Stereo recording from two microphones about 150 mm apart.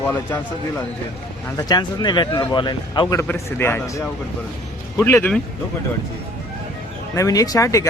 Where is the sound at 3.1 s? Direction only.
15° left (ahead or behind).